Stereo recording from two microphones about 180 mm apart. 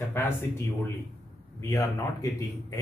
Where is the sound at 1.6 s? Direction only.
15° left (ahead or behind).